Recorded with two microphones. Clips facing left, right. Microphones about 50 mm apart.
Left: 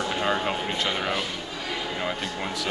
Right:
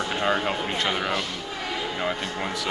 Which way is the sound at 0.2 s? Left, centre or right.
Centre.